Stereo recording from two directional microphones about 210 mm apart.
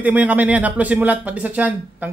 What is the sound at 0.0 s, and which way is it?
Speech, 10° right (ahead or behind).